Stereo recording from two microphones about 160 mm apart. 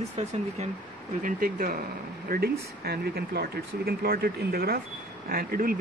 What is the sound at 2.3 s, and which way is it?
Speech, 75° right (ahead or behind).